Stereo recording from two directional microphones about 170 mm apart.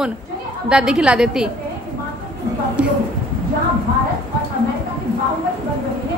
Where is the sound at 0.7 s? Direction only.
5° right (ahead or behind).